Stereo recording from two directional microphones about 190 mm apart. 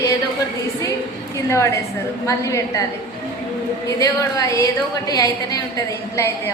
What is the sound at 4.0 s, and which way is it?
A woman's voice, 15° left (ahead or behind).